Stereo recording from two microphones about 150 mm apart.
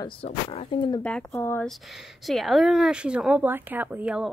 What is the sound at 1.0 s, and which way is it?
Speech, 10° left (ahead or behind).